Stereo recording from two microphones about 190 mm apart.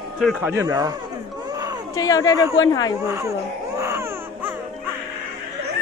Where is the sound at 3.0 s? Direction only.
15° right (ahead or behind).